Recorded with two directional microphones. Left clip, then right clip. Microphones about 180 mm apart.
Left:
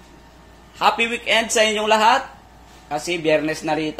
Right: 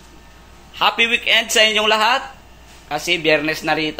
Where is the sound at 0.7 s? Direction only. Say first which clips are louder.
Right 3 dB; 5° left (ahead or behind).